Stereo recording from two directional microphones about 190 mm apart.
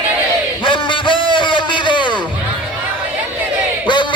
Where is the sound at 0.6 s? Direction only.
25° left (ahead or behind).